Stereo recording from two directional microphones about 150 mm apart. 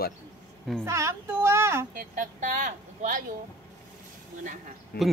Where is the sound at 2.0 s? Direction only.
65° right (ahead or behind).